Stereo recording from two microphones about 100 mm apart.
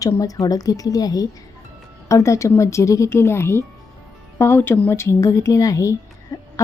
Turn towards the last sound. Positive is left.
turn(degrees=30)  # may be behind; listen again after turning